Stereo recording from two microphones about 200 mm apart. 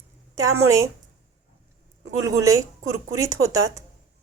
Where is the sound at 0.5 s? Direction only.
15° right (ahead or behind).